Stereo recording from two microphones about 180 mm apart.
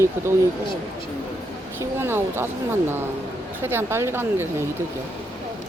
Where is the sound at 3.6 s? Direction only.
15° right (ahead or behind).